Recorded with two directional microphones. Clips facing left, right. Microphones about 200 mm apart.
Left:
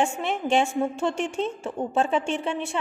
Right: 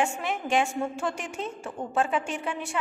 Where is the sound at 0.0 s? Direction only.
30° left (ahead or behind).